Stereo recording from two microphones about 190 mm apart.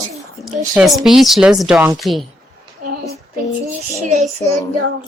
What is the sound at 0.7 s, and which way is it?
A woman's voice, centre (ahead or behind).